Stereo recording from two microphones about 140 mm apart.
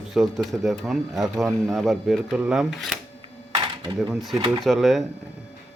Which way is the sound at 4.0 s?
Centre (ahead or behind).